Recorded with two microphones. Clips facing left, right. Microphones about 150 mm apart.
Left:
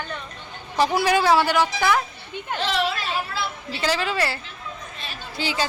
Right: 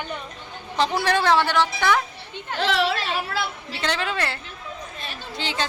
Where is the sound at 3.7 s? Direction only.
5° left (ahead or behind).